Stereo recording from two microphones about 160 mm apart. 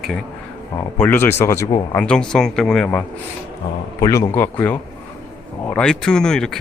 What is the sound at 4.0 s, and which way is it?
Speech, 20° left (ahead or behind).